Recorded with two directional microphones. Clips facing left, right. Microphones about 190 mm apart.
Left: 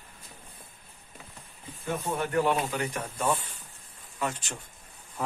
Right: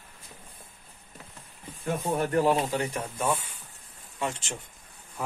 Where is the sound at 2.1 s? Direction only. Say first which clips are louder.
Right 3 dB; 40° right (ahead or behind).